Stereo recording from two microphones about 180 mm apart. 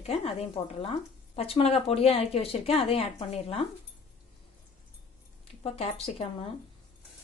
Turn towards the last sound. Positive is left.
turn(degrees=35)  # may be behind; listen again after turning